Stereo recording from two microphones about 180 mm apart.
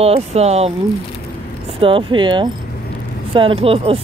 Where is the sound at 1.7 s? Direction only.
30° right (ahead or behind).